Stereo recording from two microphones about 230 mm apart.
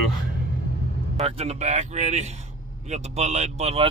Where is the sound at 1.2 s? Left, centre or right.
Right.